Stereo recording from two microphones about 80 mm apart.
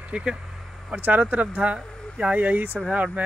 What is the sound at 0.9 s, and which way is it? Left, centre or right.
Speech, right.